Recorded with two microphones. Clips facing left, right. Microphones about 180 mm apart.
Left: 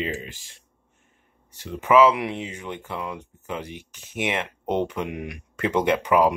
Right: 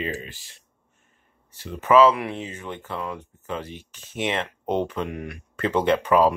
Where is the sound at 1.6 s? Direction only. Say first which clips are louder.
Right 1 dB; 10° left (ahead or behind).